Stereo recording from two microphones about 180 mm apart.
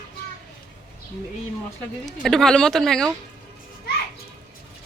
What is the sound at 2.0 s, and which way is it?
Speech, centre (ahead or behind).